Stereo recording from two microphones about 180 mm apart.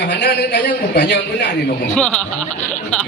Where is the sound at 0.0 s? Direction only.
70° left (ahead or behind).